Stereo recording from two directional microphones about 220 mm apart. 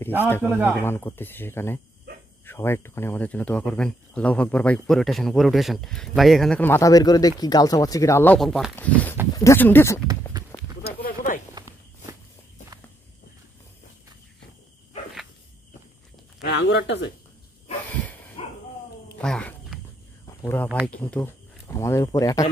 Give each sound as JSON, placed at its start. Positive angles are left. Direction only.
{"t": 0.4, "sound": "speech", "side_deg": -10}
{"t": 0.8, "sound": "speech", "side_deg": 10}
{"t": 10.9, "sound": "a sound", "side_deg": 40}
{"t": 11.5, "sound": "walk", "side_deg": -15}
{"t": 16.4, "sound": "speech", "side_deg": 50}
{"t": 17.8, "sound": "dog", "side_deg": 5}
{"t": 18.4, "sound": "bow-wow", "side_deg": 25}
{"t": 19.2, "sound": "a sound", "side_deg": 5}
{"t": 20.8, "sound": "speech", "side_deg": 5}